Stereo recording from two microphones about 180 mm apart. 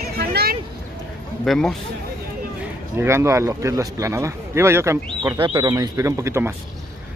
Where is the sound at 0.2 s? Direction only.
55° right (ahead or behind).